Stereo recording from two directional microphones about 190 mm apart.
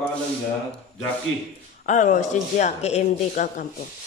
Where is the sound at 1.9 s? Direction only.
40° left (ahead or behind).